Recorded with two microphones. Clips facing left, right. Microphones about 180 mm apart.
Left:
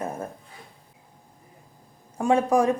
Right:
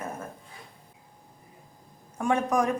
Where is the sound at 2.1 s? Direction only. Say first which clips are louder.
Left 4 dB; 30° left (ahead or behind).